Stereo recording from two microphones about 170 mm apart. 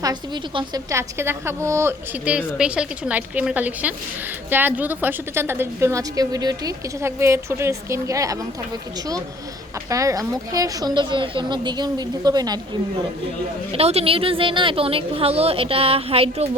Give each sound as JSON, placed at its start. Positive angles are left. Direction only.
{"t": 0.0, "sound": "a woman's voice", "side_deg": -25}
{"t": 9.9, "sound": "a woman's voice", "side_deg": -20}
{"t": 13.7, "sound": "a woman's voice", "side_deg": -35}